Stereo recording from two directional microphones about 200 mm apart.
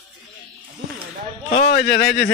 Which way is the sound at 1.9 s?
60° left (ahead or behind).